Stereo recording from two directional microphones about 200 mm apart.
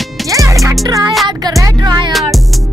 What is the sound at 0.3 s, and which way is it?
Music, 15° right (ahead or behind).